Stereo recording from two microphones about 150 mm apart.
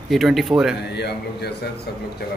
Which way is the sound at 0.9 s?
90° left.